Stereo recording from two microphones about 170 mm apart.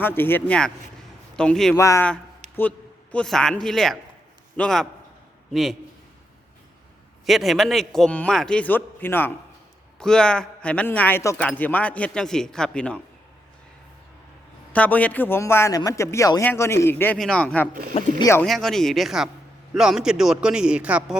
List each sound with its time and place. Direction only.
0.0 s a man's voice: 10° left (ahead or behind)
1.7 s a man's voice: 20° left (ahead or behind); by 5.7 s centre (ahead or behind)
7.3 s a man's voice: centre (ahead or behind)
14.7 s a man's voice: 10° left (ahead or behind)
18.4 s a man's voice: centre (ahead or behind)